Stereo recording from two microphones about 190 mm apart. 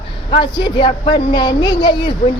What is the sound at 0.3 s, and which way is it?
Speech, 25° left (ahead or behind).